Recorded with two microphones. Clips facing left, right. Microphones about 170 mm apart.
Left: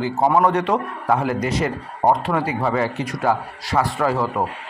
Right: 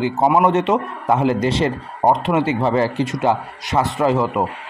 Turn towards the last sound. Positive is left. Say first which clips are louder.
# right 3 dB
turn(degrees=-20)  # may be behind; listen again after turning